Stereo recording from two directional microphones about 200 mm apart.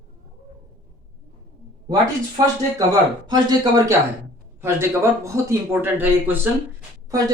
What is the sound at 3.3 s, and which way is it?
A man's voice, 20° right (ahead or behind).